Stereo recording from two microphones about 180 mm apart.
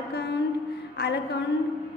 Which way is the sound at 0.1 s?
65° left (ahead or behind).